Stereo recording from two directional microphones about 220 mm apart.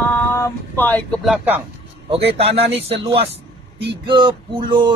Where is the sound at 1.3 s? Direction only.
10° right (ahead or behind).